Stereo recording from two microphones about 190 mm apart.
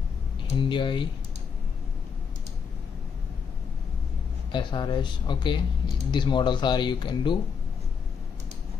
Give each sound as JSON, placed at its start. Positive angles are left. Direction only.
{"t": 0.6, "sound": "speech", "side_deg": 25}
{"t": 4.5, "sound": "speech", "side_deg": 25}